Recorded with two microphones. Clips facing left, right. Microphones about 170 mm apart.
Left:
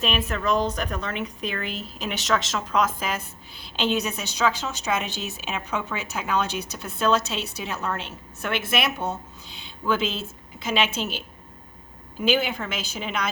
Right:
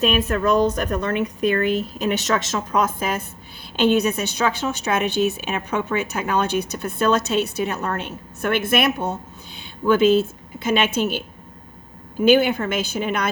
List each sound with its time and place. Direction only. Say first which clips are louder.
0.0 s a woman's voice: right 6 dB; 45° right (ahead or behind)
12.2 s a woman's voice: right 8 dB; 55° right (ahead or behind)